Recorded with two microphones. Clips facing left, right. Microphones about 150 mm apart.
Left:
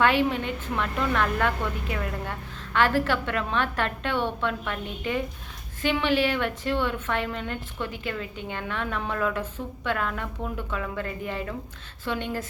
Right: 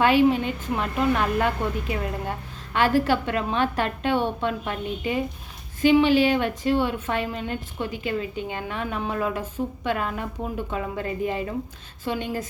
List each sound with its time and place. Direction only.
0.0 s a woman's voice: 15° right (ahead or behind)